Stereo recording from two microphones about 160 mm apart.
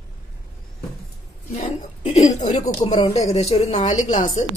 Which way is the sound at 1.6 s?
40° left (ahead or behind).